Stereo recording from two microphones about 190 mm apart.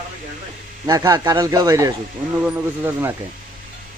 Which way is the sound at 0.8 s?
20° right (ahead or behind).